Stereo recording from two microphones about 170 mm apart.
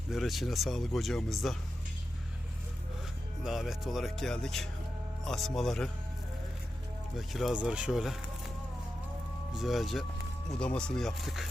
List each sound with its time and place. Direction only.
0.1 s speech: centre (ahead or behind)
3.4 s speech: centre (ahead or behind)
7.2 s speech: centre (ahead or behind)
9.5 s speech: centre (ahead or behind)